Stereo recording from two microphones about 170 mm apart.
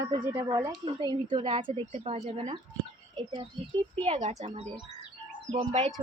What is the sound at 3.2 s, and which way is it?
Child singing, 25° right (ahead or behind).